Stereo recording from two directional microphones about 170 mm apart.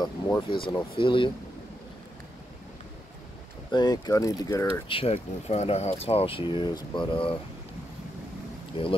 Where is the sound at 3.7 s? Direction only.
25° left (ahead or behind).